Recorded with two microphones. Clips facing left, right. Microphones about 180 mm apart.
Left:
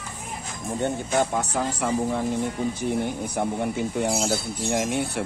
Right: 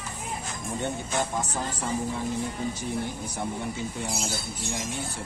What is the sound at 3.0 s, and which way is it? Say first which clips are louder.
Speech: left 6 dB; 60° left (ahead or behind).